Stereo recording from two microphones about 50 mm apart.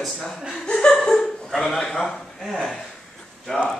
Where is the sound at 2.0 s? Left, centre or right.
Centre.